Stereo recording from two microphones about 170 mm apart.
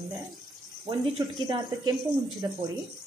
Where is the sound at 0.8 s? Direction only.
25° right (ahead or behind).